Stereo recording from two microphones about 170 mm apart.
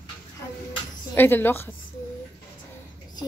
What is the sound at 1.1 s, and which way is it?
Speech, 10° left (ahead or behind).